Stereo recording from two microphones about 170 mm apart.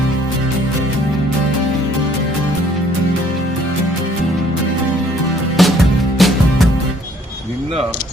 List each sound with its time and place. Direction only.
5.6 s music: centre (ahead or behind)